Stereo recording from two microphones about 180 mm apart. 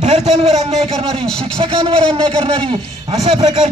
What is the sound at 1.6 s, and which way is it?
A man's voice, 30° right (ahead or behind).